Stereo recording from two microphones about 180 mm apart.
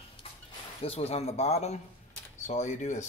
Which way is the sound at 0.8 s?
35° left (ahead or behind).